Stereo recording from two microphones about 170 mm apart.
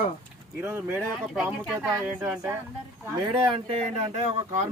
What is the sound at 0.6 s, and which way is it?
Speech, 10° right (ahead or behind).